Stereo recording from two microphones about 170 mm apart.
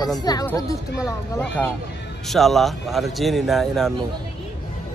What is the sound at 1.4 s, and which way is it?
A man's voice, 10° left (ahead or behind).